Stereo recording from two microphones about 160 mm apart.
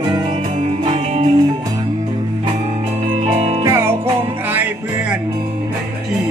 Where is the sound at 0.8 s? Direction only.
40° right (ahead or behind).